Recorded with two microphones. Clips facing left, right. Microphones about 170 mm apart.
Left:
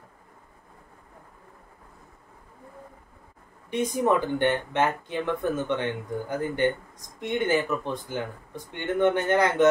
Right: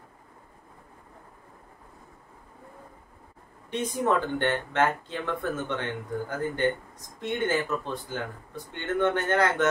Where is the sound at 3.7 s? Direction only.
15° left (ahead or behind).